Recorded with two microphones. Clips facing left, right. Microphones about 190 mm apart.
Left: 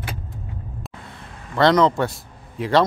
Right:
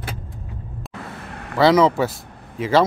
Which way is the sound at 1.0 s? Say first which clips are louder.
Right 6 dB; 75° right (ahead or behind).